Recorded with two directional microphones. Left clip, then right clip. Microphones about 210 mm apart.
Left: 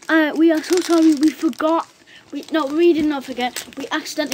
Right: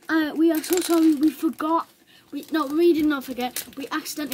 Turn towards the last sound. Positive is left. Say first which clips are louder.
# left 6 dB
turn(degrees=-25)  # may be behind; listen again after turning